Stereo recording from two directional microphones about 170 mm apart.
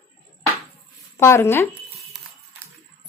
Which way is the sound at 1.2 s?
15° left (ahead or behind).